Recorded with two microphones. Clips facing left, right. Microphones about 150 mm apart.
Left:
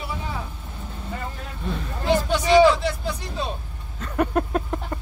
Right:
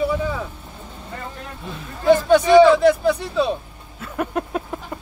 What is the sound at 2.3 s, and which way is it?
A man's voice, 55° right (ahead or behind).